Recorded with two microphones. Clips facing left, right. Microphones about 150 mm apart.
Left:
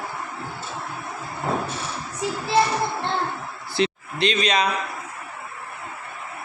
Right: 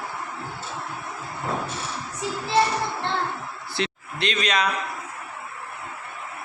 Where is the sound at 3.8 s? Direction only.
30° left (ahead or behind).